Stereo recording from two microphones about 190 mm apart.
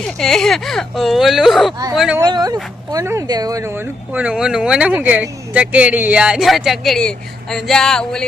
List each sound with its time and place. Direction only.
0.2 s speech: centre (ahead or behind)
2.2 s speech: 20° right (ahead or behind); by 8.2 s 5° left (ahead or behind)